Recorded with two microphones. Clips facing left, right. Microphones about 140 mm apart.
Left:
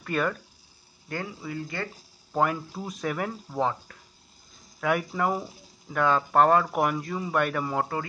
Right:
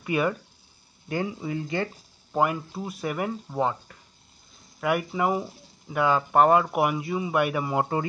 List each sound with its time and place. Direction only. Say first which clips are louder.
0.0 s speech: right 3 dB; 10° right (ahead or behind)
2.3 s speech: right 1 dB; 5° right (ahead or behind)
7.8 s speech: right 4 dB; 25° right (ahead or behind)